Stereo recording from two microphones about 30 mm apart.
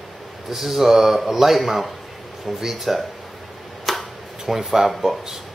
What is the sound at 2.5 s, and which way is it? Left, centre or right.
Speech, centre.